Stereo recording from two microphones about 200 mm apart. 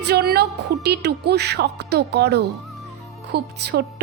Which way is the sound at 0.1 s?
55° right (ahead or behind).